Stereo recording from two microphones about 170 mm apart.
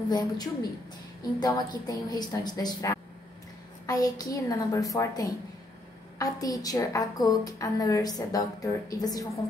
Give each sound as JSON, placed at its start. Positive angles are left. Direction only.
{"t": 0.1, "sound": "a woman's voice", "side_deg": 25}